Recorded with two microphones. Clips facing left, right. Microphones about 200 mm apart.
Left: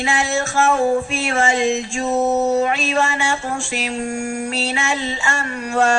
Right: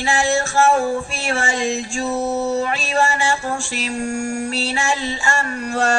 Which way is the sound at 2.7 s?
35° right (ahead or behind).